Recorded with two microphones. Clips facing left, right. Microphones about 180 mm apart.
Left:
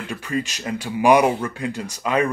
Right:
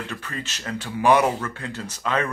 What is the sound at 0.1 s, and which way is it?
Speech, 10° left (ahead or behind).